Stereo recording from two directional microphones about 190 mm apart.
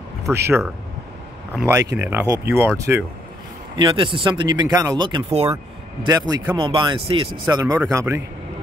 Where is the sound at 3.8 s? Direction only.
25° right (ahead or behind).